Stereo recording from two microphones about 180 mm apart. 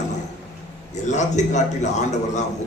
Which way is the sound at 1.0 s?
40° left (ahead or behind).